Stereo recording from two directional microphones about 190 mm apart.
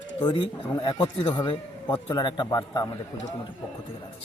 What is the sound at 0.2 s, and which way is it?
Speech, 30° left (ahead or behind).